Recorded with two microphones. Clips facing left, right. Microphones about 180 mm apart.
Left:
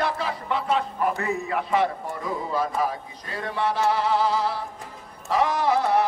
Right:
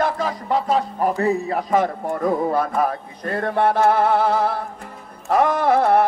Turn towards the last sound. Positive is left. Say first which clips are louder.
# right 5 dB
turn(degrees=-55)  # may be behind; listen again after turning